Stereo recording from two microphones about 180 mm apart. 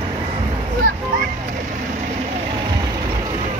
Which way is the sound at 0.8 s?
50° right (ahead or behind).